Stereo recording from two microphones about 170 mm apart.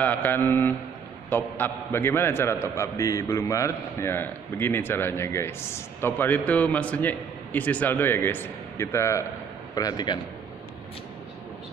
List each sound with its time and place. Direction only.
0.0 s a man's voice: 10° left (ahead or behind)